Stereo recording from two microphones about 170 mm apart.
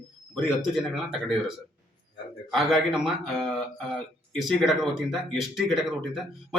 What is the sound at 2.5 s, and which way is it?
Speech, centre (ahead or behind).